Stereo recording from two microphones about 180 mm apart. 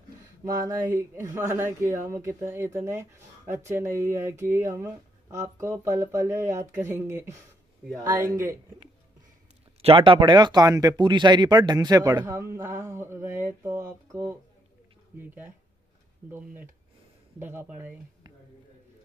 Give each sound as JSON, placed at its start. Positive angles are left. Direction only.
{"t": 0.7, "sound": "speech", "side_deg": -10}
{"t": 9.8, "sound": "speech", "side_deg": -30}